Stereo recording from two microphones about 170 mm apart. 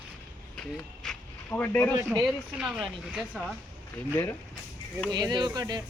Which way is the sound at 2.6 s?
Centre (ahead or behind).